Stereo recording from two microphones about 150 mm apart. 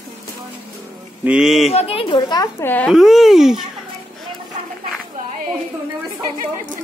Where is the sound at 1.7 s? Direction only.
40° left (ahead or behind).